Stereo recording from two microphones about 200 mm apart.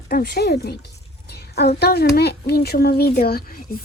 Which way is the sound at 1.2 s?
55° left (ahead or behind).